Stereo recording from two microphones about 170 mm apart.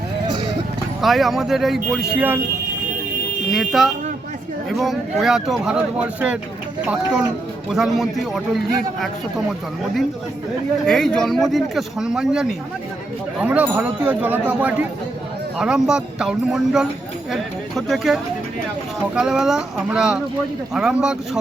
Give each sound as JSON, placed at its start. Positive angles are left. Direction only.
{"t": 1.0, "sound": "speech", "side_deg": 0}
{"t": 3.5, "sound": "speech", "side_deg": 0}
{"t": 10.8, "sound": "speech", "side_deg": 5}